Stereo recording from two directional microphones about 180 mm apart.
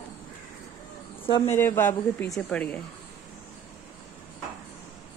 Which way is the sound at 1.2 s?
30° left (ahead or behind).